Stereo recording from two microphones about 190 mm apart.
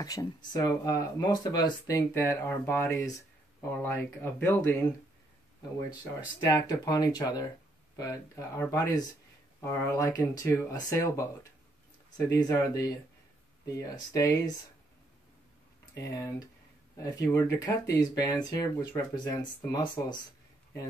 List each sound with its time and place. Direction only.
0.0 s speech: 20° left (ahead or behind)
6.4 s speech: 20° left (ahead or behind)
12.3 s speech: 15° left (ahead or behind)
15.8 s speech: 15° left (ahead or behind)